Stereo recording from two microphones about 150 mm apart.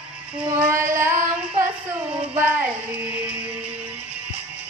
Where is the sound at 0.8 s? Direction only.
20° right (ahead or behind).